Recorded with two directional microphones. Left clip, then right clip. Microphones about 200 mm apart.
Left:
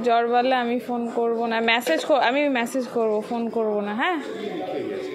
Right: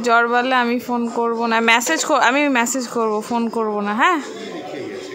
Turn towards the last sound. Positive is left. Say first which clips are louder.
# right 7 dB
turn(degrees=-15)  # may be behind; listen again after turning